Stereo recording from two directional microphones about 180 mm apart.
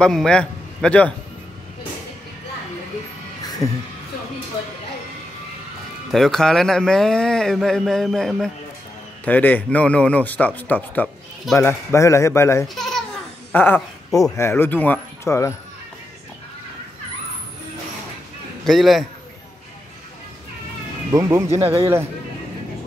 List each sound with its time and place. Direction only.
0.0 s a man's voice: 5° left (ahead or behind)
3.4 s music: 20° left (ahead or behind)
6.1 s a man's voice: 5° left (ahead or behind)
12.6 s speech: centre (ahead or behind)
13.5 s dog: 10° left (ahead or behind)
14.2 s speech: 15° left (ahead or behind)
18.6 s a man's voice: centre (ahead or behind)
21.1 s speech: 15° right (ahead or behind)